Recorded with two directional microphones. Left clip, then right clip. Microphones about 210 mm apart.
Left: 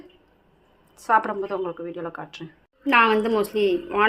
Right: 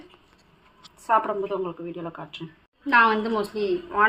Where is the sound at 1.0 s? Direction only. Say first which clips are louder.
Left 1 dB; 15° left (ahead or behind).